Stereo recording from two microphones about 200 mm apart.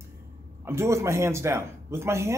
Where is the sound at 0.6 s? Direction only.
15° right (ahead or behind).